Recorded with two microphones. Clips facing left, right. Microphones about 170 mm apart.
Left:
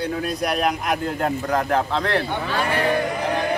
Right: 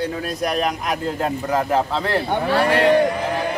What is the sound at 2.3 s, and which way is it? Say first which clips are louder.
Speech: right 5 dB; 65° right (ahead or behind).